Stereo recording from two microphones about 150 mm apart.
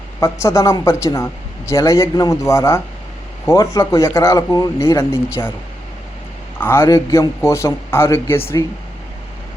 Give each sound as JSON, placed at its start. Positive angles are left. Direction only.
{"t": 0.2, "sound": "speech", "side_deg": 20}
{"t": 6.6, "sound": "a man's voice", "side_deg": 15}